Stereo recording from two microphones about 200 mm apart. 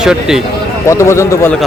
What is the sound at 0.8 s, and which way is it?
Speech, 15° left (ahead or behind).